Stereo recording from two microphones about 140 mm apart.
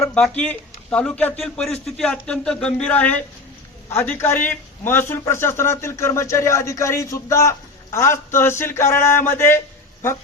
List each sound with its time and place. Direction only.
0.0 s a man's voice: 5° left (ahead or behind)